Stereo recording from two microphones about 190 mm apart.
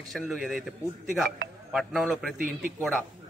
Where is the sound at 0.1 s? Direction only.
Centre (ahead or behind).